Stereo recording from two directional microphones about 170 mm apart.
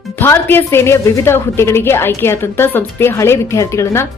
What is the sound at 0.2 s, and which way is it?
A woman's voice, 10° left (ahead or behind).